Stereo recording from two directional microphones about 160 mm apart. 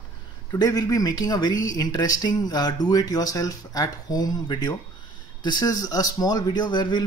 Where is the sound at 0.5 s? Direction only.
25° left (ahead or behind).